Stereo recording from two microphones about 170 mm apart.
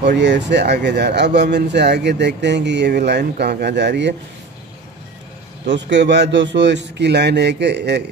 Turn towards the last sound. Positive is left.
turn(degrees=-85)